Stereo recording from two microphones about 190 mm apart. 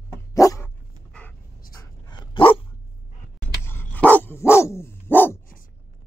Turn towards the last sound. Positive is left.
turn(degrees=10)  # may be behind; listen again after turning